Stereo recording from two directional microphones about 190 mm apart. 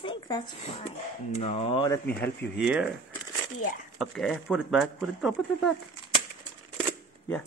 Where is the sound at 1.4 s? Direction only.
35° left (ahead or behind).